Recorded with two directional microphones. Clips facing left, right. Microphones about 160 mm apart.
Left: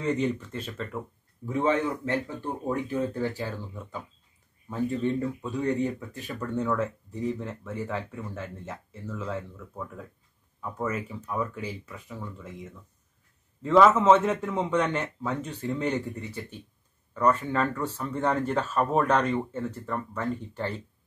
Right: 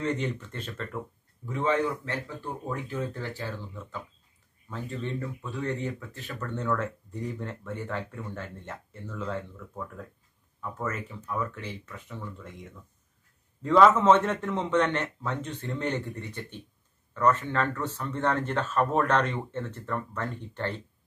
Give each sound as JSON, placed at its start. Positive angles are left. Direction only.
{"t": 0.0, "sound": "speech", "side_deg": 10}
{"t": 1.4, "sound": "speech", "side_deg": 20}